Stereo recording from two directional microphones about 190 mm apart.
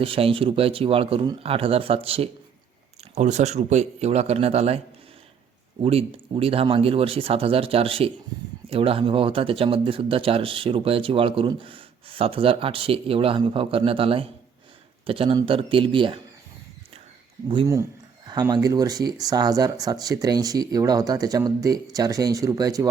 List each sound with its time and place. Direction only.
0.0 s a man's voice: 30° right (ahead or behind)
5.8 s speech: 30° right (ahead or behind)
17.5 s speech: 25° right (ahead or behind)